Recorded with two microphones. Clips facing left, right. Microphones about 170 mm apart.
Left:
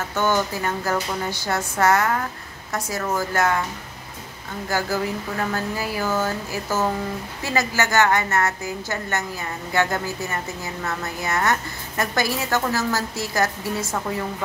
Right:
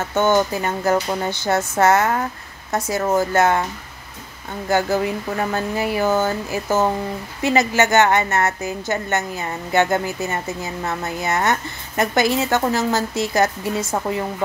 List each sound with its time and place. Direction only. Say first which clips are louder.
0.1 s speech: right 5 dB; 20° right (ahead or behind)
4.6 s speech: right 5 dB; 25° right (ahead or behind)